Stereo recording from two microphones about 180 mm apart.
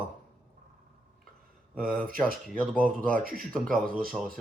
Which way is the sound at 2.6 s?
5° left (ahead or behind).